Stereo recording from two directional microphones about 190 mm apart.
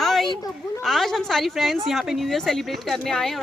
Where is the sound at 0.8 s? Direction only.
Centre (ahead or behind).